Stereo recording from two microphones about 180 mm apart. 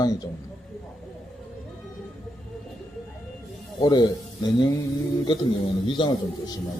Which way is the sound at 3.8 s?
20° left (ahead or behind).